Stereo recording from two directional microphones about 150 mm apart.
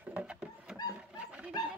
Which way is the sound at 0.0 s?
10° right (ahead or behind).